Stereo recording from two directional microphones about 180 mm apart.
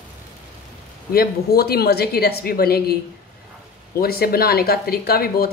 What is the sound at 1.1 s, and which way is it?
A woman's voice, 60° left (ahead or behind).